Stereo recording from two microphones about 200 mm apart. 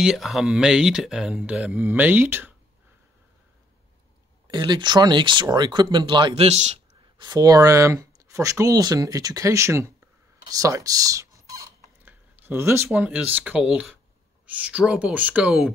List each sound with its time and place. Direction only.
0.0 s speech: centre (ahead or behind)
4.5 s speech: 20° right (ahead or behind)
7.2 s speech: 20° right (ahead or behind); by 15.7 s centre (ahead or behind)